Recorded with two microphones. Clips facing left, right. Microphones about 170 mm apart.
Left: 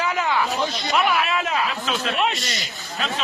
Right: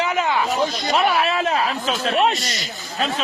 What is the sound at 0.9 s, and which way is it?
Speech, 35° right (ahead or behind).